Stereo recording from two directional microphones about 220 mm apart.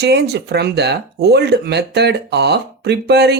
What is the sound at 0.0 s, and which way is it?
Speech, 50° right (ahead or behind).